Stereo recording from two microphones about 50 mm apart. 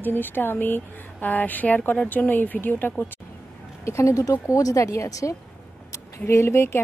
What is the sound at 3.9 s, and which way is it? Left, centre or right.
Speech, left.